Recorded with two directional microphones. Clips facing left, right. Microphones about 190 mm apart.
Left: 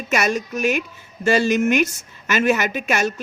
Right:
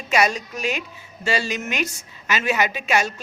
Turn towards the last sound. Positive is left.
turn(degrees=50)  # may be behind; listen again after turning